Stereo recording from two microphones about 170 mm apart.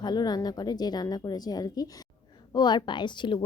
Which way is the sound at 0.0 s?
25° left (ahead or behind).